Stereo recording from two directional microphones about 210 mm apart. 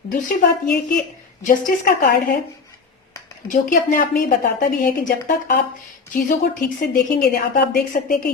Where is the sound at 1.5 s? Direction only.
40° left (ahead or behind).